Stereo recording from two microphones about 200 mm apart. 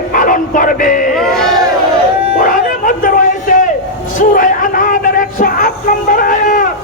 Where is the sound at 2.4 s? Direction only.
40° left (ahead or behind).